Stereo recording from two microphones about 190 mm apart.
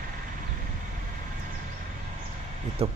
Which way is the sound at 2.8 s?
30° right (ahead or behind).